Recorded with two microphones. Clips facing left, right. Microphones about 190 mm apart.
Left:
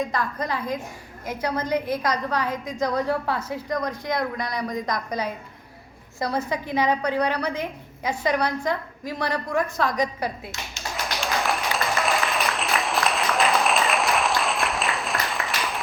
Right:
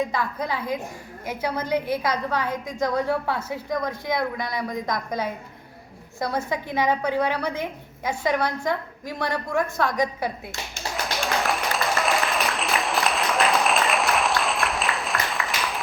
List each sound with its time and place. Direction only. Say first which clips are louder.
0.2 s a woman's voice: even; 5° right (ahead or behind)
11.0 s applause: right 1 dB; centre (ahead or behind)